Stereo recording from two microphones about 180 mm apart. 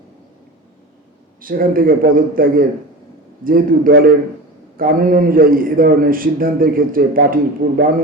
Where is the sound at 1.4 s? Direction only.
50° right (ahead or behind).